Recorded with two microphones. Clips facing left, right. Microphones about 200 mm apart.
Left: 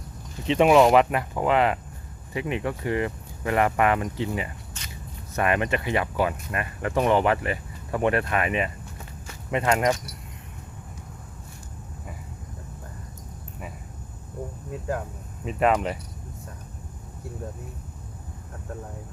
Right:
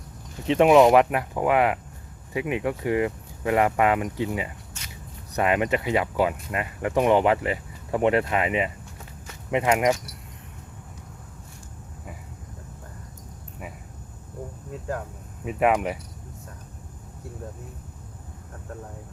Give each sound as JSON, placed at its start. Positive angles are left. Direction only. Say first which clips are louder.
{"t": 0.5, "sound": "speech", "louder": "right 1 dB", "side_deg": 0}
{"t": 14.7, "sound": "a sound", "louder": "left 2 dB", "side_deg": 5}
{"t": 15.4, "sound": "speech", "louder": "even", "side_deg": -10}